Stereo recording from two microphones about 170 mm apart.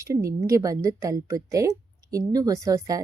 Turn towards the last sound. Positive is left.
turn(degrees=-20)  # may be behind; listen again after turning